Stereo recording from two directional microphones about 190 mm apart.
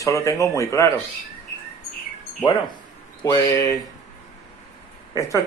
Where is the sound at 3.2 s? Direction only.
15° left (ahead or behind).